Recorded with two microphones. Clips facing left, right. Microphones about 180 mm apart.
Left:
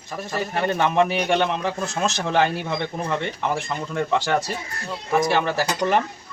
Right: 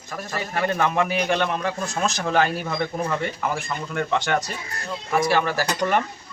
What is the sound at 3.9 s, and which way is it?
Speech, 30° left (ahead or behind).